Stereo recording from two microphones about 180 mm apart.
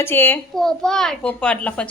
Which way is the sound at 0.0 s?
10° left (ahead or behind).